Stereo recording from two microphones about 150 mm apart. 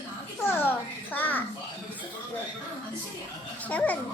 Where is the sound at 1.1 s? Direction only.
10° left (ahead or behind).